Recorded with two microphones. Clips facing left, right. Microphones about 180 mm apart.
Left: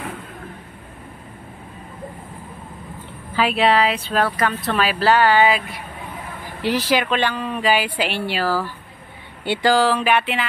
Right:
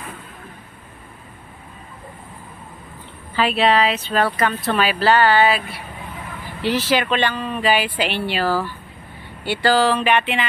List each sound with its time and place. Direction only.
3.3 s speech: 10° left (ahead or behind)
9.4 s speech: 20° left (ahead or behind)